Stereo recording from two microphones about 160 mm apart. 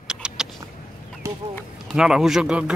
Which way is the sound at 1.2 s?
15° right (ahead or behind).